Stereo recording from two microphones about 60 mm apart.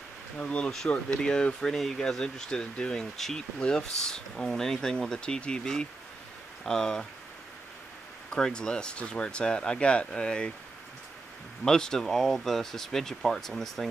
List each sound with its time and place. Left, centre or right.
0.4 s speech: centre
8.3 s speech: centre
11.6 s speech: centre